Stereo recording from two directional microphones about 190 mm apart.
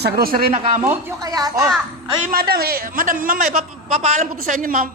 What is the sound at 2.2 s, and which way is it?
A man's voice, 50° right (ahead or behind).